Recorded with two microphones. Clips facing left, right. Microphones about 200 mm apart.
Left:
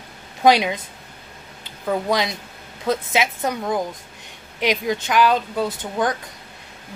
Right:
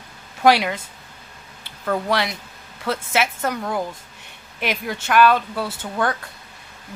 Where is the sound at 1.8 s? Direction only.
15° left (ahead or behind).